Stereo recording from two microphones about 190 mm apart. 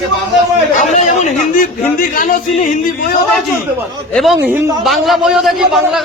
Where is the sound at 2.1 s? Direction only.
45° left (ahead or behind).